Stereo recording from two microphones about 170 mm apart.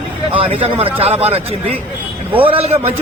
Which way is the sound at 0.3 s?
35° right (ahead or behind).